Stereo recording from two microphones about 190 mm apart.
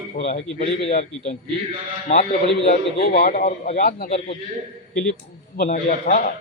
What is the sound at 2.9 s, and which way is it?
Speech, 45° left (ahead or behind).